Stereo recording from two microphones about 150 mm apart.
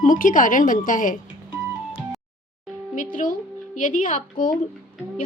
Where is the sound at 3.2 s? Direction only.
70° left (ahead or behind).